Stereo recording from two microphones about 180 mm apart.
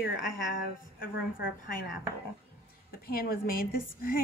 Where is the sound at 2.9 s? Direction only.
55° left (ahead or behind).